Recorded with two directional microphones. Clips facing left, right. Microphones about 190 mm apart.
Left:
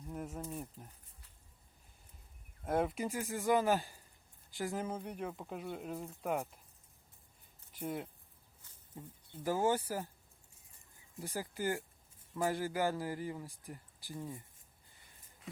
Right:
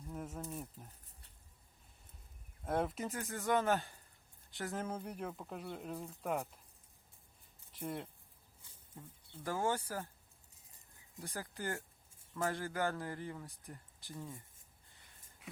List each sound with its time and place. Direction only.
0.1 s a sound: 5° left (ahead or behind)
2.6 s speech: 5° left (ahead or behind)
7.7 s a man's voice: 5° left (ahead or behind)
11.2 s a man's voice: 15° left (ahead or behind)
11.5 s a man's voice: 5° left (ahead or behind)